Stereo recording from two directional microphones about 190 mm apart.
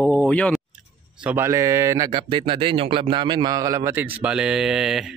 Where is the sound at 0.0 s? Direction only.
5° left (ahead or behind).